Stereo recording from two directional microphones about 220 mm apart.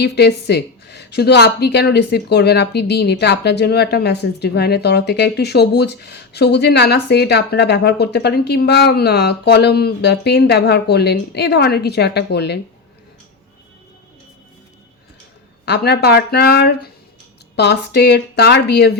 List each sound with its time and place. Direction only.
0.0 s speech: 50° left (ahead or behind)
15.6 s speech: 50° left (ahead or behind)